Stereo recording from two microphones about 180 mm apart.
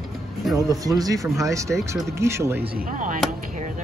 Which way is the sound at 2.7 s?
50° right (ahead or behind).